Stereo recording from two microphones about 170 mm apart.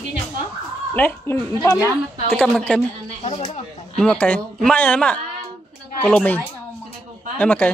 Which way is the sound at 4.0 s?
5° left (ahead or behind).